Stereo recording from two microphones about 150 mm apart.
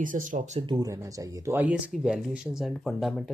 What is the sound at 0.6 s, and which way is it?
Speech, 30° right (ahead or behind).